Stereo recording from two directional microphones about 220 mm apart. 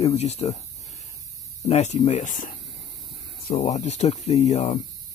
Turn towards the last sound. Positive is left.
turn(degrees=30)  # may be behind; listen again after turning